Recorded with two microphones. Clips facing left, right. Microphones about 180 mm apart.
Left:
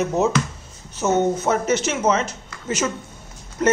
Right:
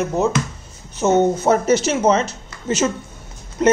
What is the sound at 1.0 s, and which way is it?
Speech, 30° right (ahead or behind).